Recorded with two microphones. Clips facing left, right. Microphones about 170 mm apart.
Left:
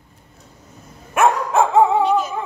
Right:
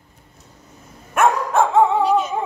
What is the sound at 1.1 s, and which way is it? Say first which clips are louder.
Dog: left 1 dB; 5° left (ahead or behind).